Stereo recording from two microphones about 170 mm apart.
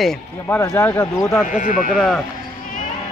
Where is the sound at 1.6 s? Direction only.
50° left (ahead or behind).